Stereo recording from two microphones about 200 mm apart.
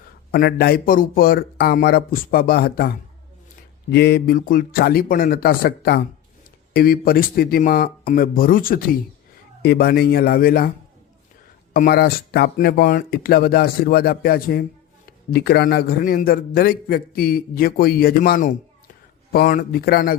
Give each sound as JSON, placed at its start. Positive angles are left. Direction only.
{"t": 0.3, "sound": "a man's voice", "side_deg": 50}
{"t": 3.9, "sound": "a man's voice", "side_deg": 55}
{"t": 11.7, "sound": "a man's voice", "side_deg": 50}